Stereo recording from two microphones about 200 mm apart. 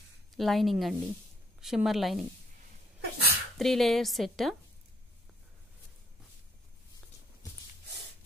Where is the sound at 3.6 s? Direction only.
Centre (ahead or behind).